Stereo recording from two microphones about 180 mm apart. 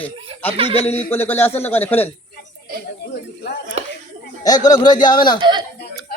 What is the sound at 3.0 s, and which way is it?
Speech, 65° left (ahead or behind).